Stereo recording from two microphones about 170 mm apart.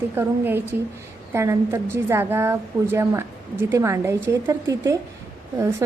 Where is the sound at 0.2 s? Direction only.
15° right (ahead or behind).